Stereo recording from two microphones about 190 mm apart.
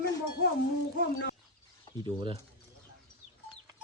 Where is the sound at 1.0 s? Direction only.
65° left (ahead or behind).